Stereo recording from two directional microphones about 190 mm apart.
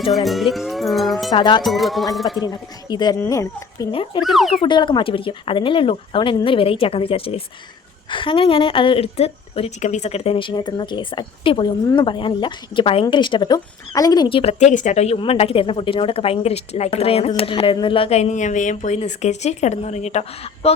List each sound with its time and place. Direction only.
0.3 s speech: centre (ahead or behind)
1.3 s a woman's voice: 25° left (ahead or behind)
1.6 s speech: centre (ahead or behind)
2.4 s a woman's voice: 20° left (ahead or behind)
4.2 s speech: centre (ahead or behind)
4.6 s a woman's voice: 25° left (ahead or behind)